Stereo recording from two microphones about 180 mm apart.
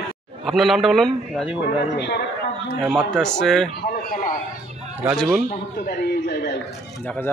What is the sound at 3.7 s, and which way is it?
Speech, 55° left (ahead or behind).